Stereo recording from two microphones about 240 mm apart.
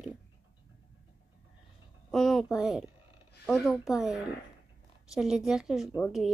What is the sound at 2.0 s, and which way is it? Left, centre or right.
A child's voice, centre.